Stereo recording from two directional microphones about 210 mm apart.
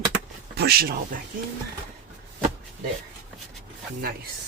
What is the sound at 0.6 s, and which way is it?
Speech, 50° right (ahead or behind).